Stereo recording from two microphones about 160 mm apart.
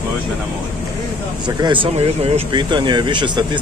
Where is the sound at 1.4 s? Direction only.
30° right (ahead or behind).